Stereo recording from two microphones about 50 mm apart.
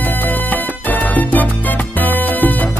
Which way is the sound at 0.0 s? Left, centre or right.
Left.